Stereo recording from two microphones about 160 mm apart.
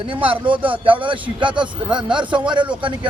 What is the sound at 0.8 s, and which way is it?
A man's voice, 30° right (ahead or behind).